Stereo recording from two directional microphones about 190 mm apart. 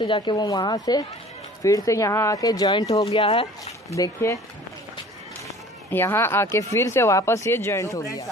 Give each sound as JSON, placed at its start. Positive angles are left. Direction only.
{"t": 0.0, "sound": "speech", "side_deg": 25}
{"t": 3.1, "sound": "speech", "side_deg": 30}
{"t": 3.9, "sound": "speech", "side_deg": 15}
{"t": 5.9, "sound": "speech", "side_deg": 15}